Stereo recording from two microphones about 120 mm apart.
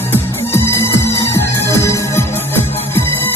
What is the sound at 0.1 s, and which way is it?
Music, 20° left (ahead or behind).